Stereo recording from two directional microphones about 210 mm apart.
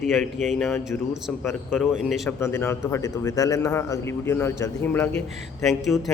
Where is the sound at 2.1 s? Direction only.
10° left (ahead or behind).